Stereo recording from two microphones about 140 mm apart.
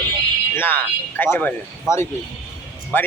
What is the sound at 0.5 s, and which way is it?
Speech, 15° left (ahead or behind).